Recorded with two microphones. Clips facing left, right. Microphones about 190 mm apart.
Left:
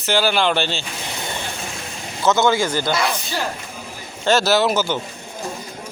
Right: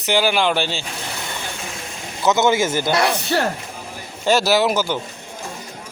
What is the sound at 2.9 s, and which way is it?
Speech, 65° right (ahead or behind).